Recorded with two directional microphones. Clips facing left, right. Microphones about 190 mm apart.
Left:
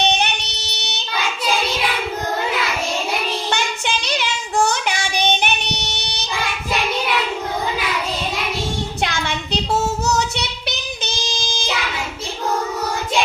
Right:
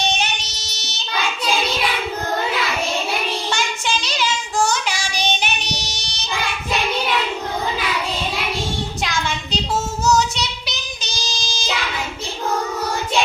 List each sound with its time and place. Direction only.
0.0 s child singing: 60° left (ahead or behind)
3.5 s child singing: 60° left (ahead or behind)
9.0 s child singing: 60° left (ahead or behind)